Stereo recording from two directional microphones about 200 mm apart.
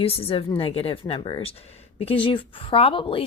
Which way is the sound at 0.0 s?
30° left (ahead or behind).